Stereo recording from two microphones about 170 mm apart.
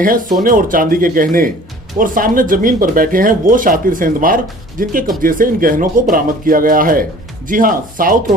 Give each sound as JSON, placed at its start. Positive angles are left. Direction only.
{"t": 0.0, "sound": "speech", "side_deg": -55}